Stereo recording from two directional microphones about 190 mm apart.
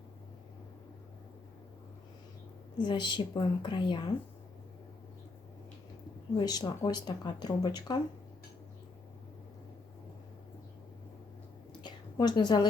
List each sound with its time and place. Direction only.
2.7 s speech: 25° left (ahead or behind)
6.3 s speech: 20° left (ahead or behind)
11.8 s a sound: 20° left (ahead or behind)